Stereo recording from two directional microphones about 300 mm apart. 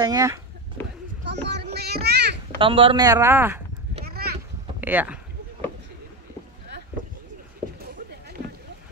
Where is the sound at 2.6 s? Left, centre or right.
Centre.